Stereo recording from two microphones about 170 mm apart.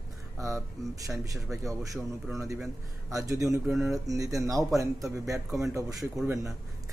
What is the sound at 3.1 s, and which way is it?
Speech, 20° right (ahead or behind).